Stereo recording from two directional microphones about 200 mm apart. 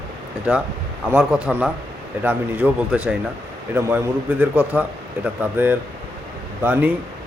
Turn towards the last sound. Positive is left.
turn(degrees=-10)  # may be behind; listen again after turning